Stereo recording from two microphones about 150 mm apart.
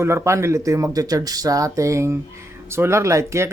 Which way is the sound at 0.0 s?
20° right (ahead or behind).